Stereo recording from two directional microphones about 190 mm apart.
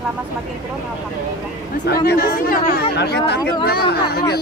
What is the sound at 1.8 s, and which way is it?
Speech, 55° left (ahead or behind).